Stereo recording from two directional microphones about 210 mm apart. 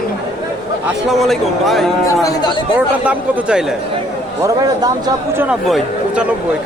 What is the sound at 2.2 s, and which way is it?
Speech, 20° left (ahead or behind).